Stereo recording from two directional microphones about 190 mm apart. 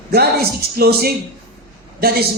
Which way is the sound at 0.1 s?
55° right (ahead or behind).